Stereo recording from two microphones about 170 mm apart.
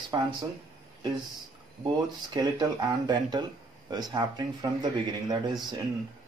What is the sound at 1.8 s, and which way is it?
Speech, 25° right (ahead or behind).